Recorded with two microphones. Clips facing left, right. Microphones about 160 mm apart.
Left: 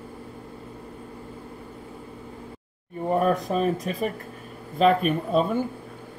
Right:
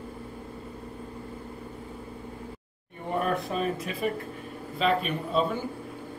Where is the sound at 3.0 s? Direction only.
40° left (ahead or behind).